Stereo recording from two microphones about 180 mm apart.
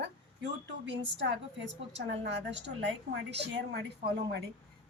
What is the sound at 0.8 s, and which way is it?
A woman's voice, 85° right.